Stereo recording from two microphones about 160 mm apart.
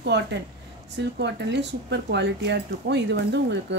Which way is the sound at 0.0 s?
90° right.